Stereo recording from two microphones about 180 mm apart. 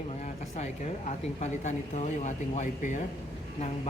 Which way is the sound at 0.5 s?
40° left (ahead or behind).